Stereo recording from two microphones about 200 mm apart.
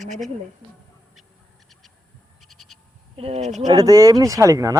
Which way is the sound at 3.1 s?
30° right (ahead or behind).